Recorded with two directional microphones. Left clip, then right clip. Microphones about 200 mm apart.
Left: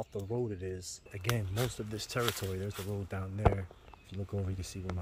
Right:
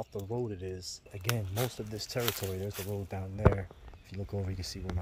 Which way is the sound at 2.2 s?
55° right (ahead or behind).